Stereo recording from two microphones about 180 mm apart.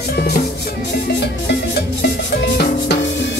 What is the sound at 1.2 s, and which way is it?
Music, 70° left (ahead or behind).